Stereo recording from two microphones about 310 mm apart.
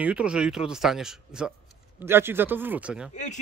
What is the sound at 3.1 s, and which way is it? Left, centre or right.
Speech, left.